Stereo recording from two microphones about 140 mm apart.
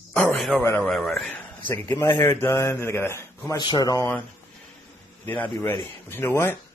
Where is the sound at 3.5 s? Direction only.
30° left (ahead or behind).